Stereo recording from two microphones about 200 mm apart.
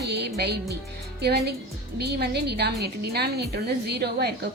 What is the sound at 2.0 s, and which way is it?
A woman's voice, 55° right (ahead or behind).